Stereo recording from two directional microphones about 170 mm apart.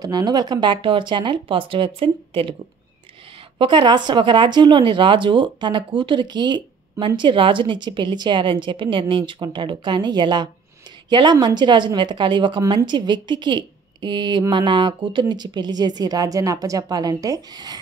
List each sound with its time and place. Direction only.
0.0 s speech: 25° right (ahead or behind)
3.5 s speech: 30° right (ahead or behind)